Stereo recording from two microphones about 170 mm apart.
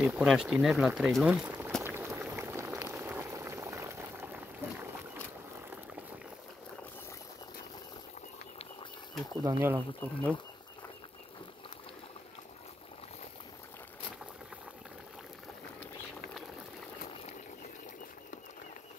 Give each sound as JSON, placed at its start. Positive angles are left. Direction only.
{"t": 0.0, "sound": "speech", "side_deg": -5}
{"t": 1.8, "sound": "boiling", "side_deg": -15}
{"t": 9.4, "sound": "speech", "side_deg": -15}